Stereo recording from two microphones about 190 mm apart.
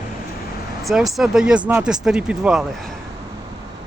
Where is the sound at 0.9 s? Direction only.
Centre (ahead or behind).